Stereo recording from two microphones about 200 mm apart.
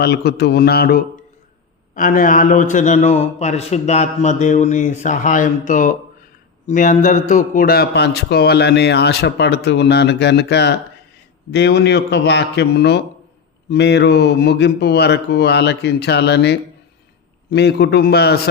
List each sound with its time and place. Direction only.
0.0 s a man's voice: 55° left (ahead or behind)